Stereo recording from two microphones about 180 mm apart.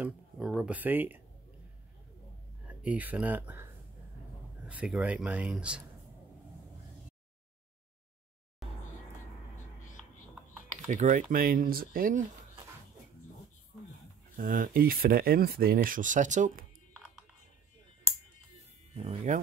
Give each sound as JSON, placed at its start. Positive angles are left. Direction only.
{"t": 0.0, "sound": "speech", "side_deg": -5}
{"t": 2.6, "sound": "speech", "side_deg": -10}
{"t": 4.6, "sound": "speech", "side_deg": -5}
{"t": 10.9, "sound": "speech", "side_deg": -45}
{"t": 14.3, "sound": "speech", "side_deg": -50}
{"t": 18.9, "sound": "speech", "side_deg": -40}